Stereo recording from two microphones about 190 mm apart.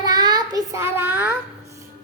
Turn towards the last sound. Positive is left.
turn(degrees=-10)  # may be behind; listen again after turning